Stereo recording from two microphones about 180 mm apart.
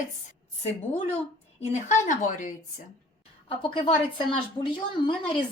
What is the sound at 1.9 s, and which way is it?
Speech, 45° left (ahead or behind).